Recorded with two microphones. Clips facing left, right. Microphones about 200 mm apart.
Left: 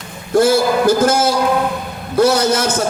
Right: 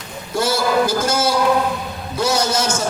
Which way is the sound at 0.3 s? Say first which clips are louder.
Left 5 dB; 55° left (ahead or behind).